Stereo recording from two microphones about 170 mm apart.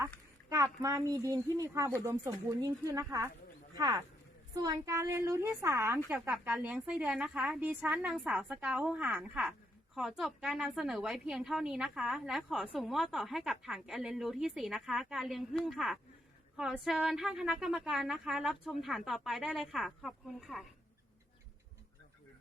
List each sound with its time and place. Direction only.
0.5 s a woman's voice: 20° right (ahead or behind); by 20.7 s centre (ahead or behind)